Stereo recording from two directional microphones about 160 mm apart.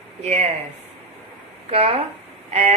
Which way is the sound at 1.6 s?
40° right (ahead or behind).